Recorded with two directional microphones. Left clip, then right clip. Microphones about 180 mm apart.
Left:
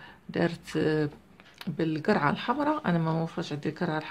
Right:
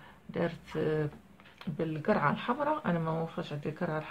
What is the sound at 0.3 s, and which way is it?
Speech, 40° left (ahead or behind).